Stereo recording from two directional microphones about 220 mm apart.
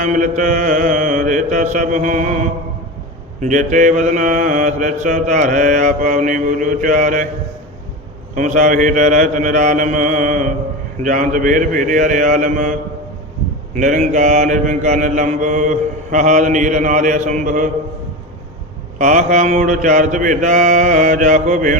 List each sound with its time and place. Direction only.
0.0 s mantra: 35° right (ahead or behind)
8.4 s mantra: 35° right (ahead or behind)
13.7 s mantra: 35° right (ahead or behind)
18.9 s mantra: 35° right (ahead or behind)